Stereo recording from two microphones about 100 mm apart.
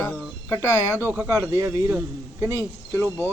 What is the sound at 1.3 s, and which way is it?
Speech, 30° right (ahead or behind).